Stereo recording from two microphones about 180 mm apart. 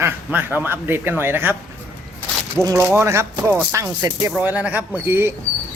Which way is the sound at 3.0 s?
15° right (ahead or behind).